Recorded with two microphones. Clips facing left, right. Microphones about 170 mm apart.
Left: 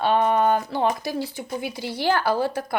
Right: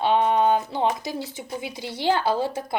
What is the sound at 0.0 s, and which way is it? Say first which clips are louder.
Speech: even; 15° right (ahead or behind).